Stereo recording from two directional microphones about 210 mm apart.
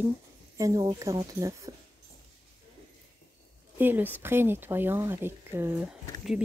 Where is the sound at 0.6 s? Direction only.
15° right (ahead or behind).